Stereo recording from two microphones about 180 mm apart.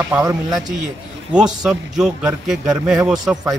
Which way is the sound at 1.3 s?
5° right (ahead or behind).